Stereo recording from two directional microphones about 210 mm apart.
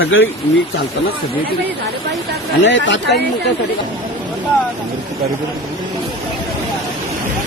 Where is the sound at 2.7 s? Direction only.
60° left (ahead or behind).